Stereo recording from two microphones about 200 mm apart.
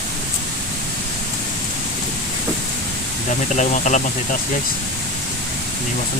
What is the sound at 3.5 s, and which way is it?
Speech, 35° left (ahead or behind).